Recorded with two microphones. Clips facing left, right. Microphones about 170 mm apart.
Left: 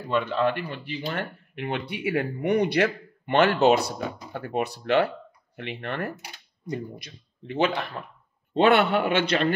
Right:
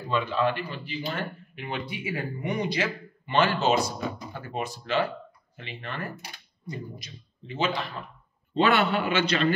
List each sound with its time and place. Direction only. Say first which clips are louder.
0.1 s speech: left 2 dB; 60° left (ahead or behind)